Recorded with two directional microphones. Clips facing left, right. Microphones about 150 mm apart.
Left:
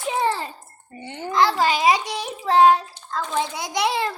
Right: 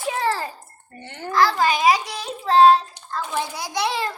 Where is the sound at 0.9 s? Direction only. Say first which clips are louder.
Even; 15° left (ahead or behind).